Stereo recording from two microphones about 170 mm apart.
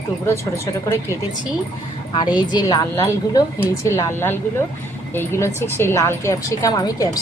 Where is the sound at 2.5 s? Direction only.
20° left (ahead or behind).